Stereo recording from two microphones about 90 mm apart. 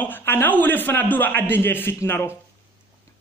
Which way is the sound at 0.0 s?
20° left (ahead or behind).